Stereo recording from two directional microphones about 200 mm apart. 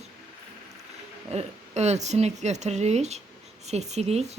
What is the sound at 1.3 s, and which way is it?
Speech, 35° right (ahead or behind).